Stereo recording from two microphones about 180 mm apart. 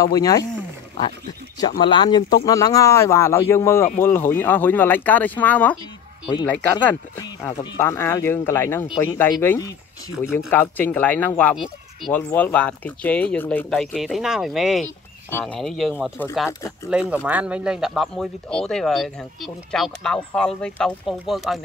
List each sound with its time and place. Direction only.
0.0 s speech: 20° left (ahead or behind)
1.8 s speech: 25° left (ahead or behind); by 7.0 s 10° left (ahead or behind)
7.2 s speech: 20° left (ahead or behind); by 21.5 s centre (ahead or behind)